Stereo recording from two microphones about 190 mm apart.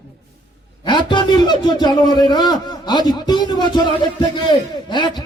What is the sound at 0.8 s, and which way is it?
A man's voice, 25° left (ahead or behind).